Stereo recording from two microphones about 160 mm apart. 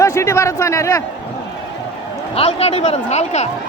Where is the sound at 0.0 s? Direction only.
20° left (ahead or behind).